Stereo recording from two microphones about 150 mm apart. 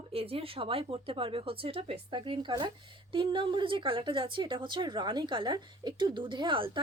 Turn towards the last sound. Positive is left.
turn(degrees=-35)  # may be behind; listen again after turning